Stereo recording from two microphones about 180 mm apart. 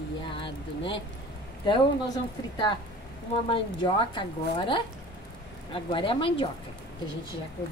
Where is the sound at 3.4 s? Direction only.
30° left (ahead or behind).